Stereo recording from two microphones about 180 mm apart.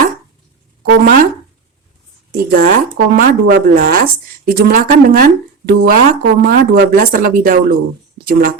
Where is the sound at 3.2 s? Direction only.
50° right (ahead or behind).